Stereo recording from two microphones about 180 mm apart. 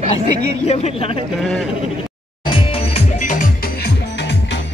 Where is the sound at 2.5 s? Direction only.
35° left (ahead or behind).